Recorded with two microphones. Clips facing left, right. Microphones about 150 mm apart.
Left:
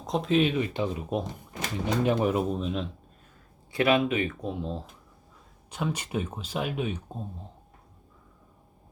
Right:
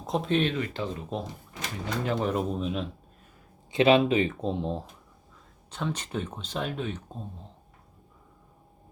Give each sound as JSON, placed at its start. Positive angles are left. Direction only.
{"t": 0.0, "sound": "speech", "side_deg": 0}
{"t": 0.5, "sound": "speech", "side_deg": 15}
{"t": 2.3, "sound": "speech", "side_deg": 0}
{"t": 3.7, "sound": "speech", "side_deg": -25}
{"t": 5.7, "sound": "speech", "side_deg": 10}